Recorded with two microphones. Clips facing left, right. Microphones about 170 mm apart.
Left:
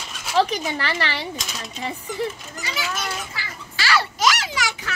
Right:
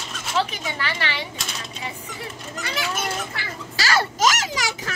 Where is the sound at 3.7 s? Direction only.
40° right (ahead or behind).